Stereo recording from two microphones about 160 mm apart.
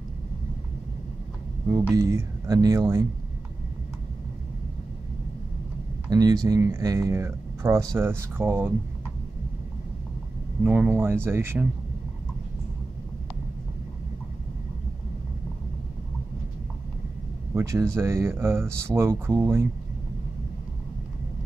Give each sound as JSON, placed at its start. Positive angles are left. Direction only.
{"t": 1.7, "sound": "speech", "side_deg": -15}
{"t": 6.0, "sound": "speech", "side_deg": -25}
{"t": 10.6, "sound": "speech", "side_deg": -10}
{"t": 17.6, "sound": "speech", "side_deg": -20}